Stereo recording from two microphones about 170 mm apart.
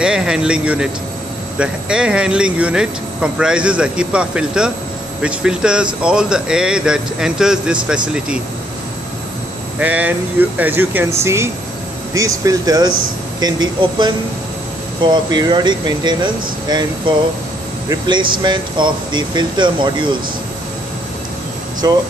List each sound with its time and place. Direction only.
0.0 s speech: 5° right (ahead or behind)
9.8 s speech: 10° right (ahead or behind); by 20.2 s 30° right (ahead or behind)
21.8 s speech: 20° right (ahead or behind)